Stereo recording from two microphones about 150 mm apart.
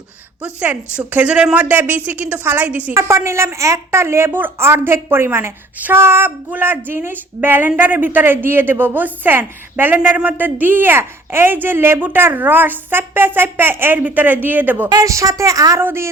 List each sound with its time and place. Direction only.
0.4 s a woman's voice: 10° right (ahead or behind)